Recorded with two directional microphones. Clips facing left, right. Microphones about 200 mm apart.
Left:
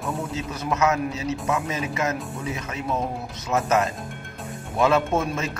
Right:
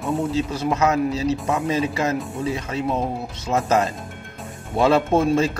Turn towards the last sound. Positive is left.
turn(degrees=-30)  # may be behind; listen again after turning